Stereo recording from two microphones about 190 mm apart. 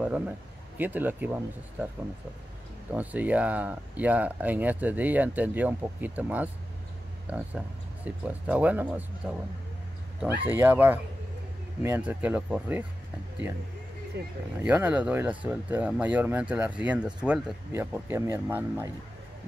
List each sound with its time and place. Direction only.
0.0 s a sound: 10° right (ahead or behind)
0.7 s speech: 10° right (ahead or behind)
2.9 s speech: 10° right (ahead or behind)
14.2 s speech: 60° right (ahead or behind)
14.6 s speech: 10° right (ahead or behind)